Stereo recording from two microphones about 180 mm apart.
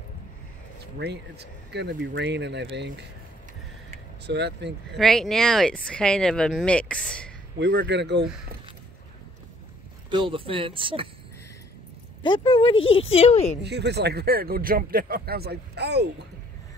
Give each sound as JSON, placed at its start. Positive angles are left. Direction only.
{"t": 0.9, "sound": "speech", "side_deg": -70}
{"t": 4.3, "sound": "speech", "side_deg": -70}
{"t": 4.9, "sound": "speech", "side_deg": 0}
{"t": 7.5, "sound": "speech", "side_deg": -75}
{"t": 10.0, "sound": "speech", "side_deg": -30}
{"t": 12.2, "sound": "speech", "side_deg": 25}
{"t": 12.7, "sound": "speech", "side_deg": 90}
{"t": 13.1, "sound": "a woman's voice", "side_deg": 35}
{"t": 13.7, "sound": "speech", "side_deg": -70}